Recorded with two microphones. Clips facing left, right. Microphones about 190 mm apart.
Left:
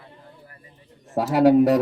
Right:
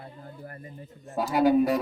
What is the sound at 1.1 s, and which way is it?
Speech, 75° left (ahead or behind).